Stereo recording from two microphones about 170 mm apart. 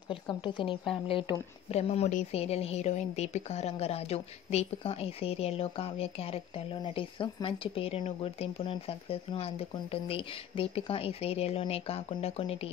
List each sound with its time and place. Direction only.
0.1 s a woman's voice: 30° left (ahead or behind)